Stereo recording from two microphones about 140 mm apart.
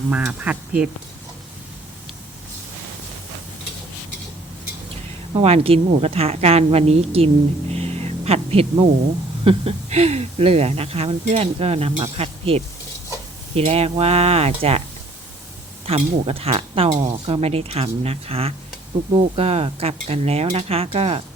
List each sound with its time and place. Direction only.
0.1 s speech: 10° right (ahead or behind)
5.3 s speech: 45° right (ahead or behind)
7.7 s a sound: 50° right (ahead or behind)
9.4 s speech: 45° right (ahead or behind)
16.0 s speech: 45° right (ahead or behind)